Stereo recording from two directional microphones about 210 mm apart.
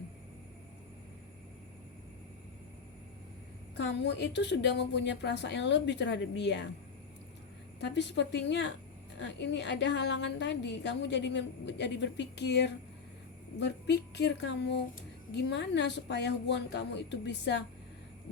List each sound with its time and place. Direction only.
3.8 s a woman's voice: 55° left (ahead or behind)
7.8 s a woman's voice: 55° left (ahead or behind)